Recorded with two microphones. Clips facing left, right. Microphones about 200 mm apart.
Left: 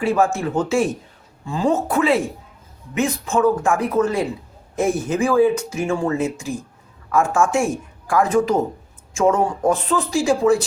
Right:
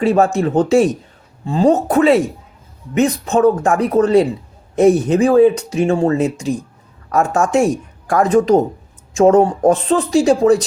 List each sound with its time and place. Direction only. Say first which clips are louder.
0.0 s speech: right 5 dB; 40° right (ahead or behind)